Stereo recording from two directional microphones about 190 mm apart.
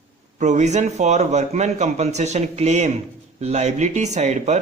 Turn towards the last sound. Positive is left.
turn(degrees=-40)  # may be behind; listen again after turning